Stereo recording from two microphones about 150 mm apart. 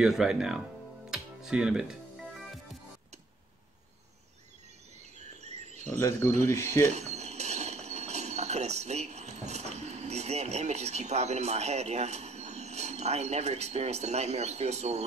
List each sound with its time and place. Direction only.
0.0 s speech: 5° right (ahead or behind)
1.1 s music: 5° right (ahead or behind)
5.2 s a sound: 45° right (ahead or behind)
5.9 s speech: 20° left (ahead or behind)
6.9 s speech: 50° right (ahead or behind)